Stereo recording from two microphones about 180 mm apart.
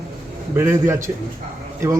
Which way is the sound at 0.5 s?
15° right (ahead or behind).